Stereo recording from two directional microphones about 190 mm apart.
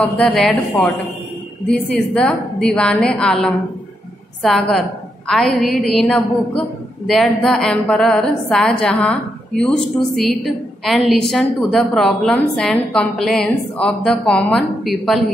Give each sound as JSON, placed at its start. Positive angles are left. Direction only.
{"t": 0.0, "sound": "a woman's voice", "side_deg": 0}